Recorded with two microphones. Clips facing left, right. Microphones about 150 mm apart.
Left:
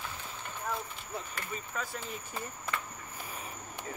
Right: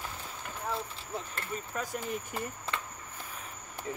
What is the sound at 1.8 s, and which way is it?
Speech, 15° right (ahead or behind).